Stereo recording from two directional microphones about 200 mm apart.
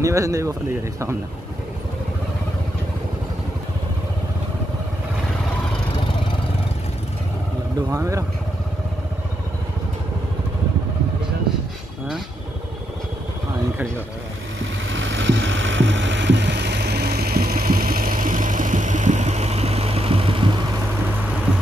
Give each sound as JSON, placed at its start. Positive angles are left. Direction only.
{"t": 0.0, "sound": "speech", "side_deg": -15}
{"t": 7.9, "sound": "speech", "side_deg": -15}
{"t": 14.6, "sound": "vehicle", "side_deg": -70}